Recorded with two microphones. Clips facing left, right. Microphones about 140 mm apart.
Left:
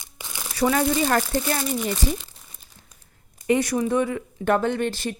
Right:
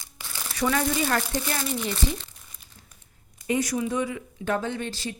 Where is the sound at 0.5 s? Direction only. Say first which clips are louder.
Left 4 dB; 35° left (ahead or behind).